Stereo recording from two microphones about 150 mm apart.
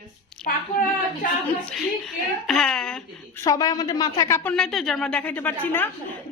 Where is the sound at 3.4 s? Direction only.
25° left (ahead or behind).